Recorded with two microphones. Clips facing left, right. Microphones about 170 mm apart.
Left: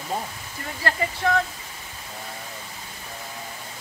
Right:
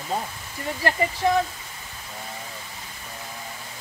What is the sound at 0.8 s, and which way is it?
Speech, 15° right (ahead or behind).